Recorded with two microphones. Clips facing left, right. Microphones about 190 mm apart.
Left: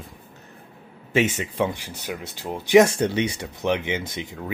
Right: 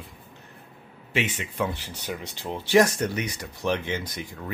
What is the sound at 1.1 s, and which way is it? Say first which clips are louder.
Speech: left 7 dB; 45° left (ahead or behind).